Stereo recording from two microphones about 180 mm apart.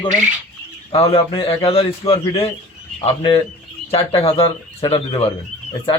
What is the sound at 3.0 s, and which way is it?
A man's voice, 35° left (ahead or behind).